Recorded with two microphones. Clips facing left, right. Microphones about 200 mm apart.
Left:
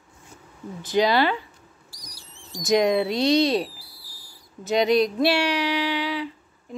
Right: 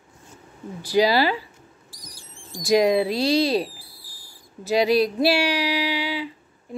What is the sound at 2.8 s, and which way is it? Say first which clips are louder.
Speech: right 2 dB; 5° right (ahead or behind).